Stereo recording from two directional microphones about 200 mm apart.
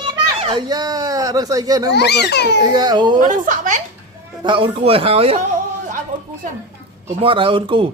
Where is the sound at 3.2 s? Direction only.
40° right (ahead or behind).